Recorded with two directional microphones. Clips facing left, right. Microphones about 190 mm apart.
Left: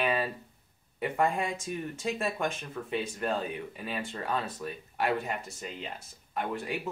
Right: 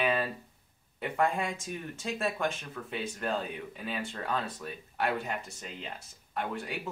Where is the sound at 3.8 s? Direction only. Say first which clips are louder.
Even; 5° left (ahead or behind).